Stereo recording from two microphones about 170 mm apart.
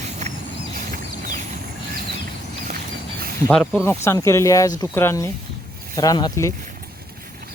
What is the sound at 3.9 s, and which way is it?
Speech, 15° left (ahead or behind).